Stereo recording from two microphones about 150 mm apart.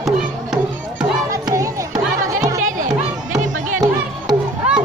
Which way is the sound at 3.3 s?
55° right (ahead or behind).